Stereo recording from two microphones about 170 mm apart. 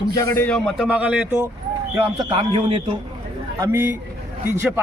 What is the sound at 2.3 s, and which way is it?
Speech, 35° right (ahead or behind).